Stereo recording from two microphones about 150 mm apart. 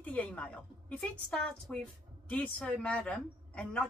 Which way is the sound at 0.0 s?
10° left (ahead or behind).